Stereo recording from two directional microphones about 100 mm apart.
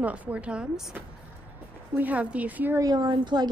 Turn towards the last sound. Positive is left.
turn(degrees=-50)  # may be behind; listen again after turning